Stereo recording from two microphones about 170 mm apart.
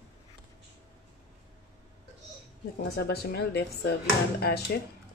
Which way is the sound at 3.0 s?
70° left (ahead or behind).